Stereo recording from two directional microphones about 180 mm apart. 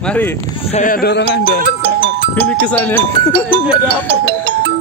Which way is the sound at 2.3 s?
10° left (ahead or behind).